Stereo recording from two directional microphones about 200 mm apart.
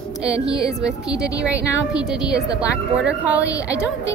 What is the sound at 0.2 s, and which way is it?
A woman's voice, 5° right (ahead or behind).